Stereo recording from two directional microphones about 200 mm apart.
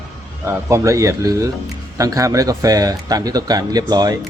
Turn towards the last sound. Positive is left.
turn(degrees=-20)  # may be behind; listen again after turning